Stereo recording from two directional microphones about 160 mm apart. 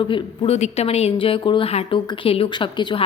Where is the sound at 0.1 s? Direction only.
40° left (ahead or behind).